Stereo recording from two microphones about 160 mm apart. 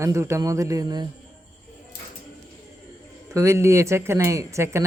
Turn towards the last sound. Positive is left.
turn(degrees=-20)  # may be behind; listen again after turning